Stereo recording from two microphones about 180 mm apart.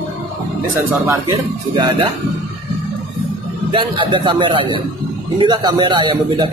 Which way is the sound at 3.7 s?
30° right (ahead or behind).